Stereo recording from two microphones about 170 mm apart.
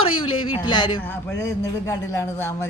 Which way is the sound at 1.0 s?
15° left (ahead or behind).